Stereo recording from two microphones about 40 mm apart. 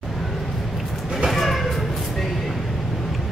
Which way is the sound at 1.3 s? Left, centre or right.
Centre.